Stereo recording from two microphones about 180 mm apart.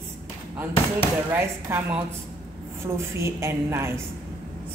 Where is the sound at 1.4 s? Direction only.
15° right (ahead or behind).